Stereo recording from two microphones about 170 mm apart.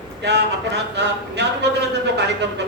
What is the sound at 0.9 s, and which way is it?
A man's voice, 90° right.